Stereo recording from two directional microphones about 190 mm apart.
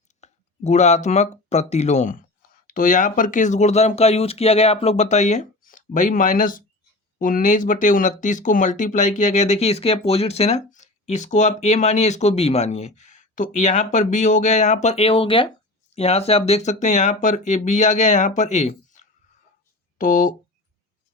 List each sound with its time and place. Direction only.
0.2 s speech: 35° left (ahead or behind)